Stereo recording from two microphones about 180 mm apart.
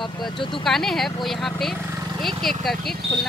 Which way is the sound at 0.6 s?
Centre (ahead or behind).